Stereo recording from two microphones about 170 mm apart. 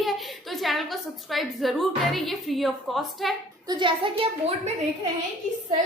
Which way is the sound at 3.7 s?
30° right (ahead or behind).